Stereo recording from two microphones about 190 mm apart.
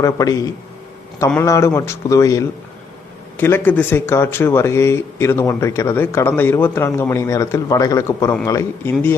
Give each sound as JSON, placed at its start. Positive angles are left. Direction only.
{"t": 0.0, "sound": "speech", "side_deg": 15}